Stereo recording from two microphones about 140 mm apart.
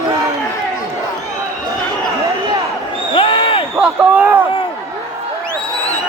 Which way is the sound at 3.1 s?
40° left (ahead or behind).